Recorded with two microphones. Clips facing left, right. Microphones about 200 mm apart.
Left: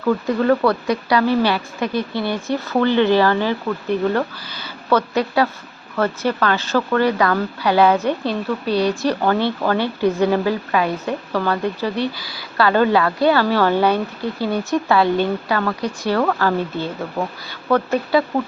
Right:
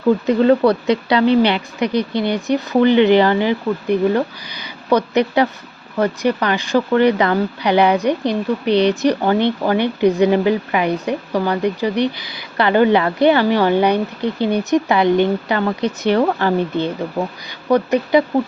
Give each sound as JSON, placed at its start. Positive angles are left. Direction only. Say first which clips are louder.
{"t": 0.0, "sound": "speech", "louder": "right 4 dB", "side_deg": -20}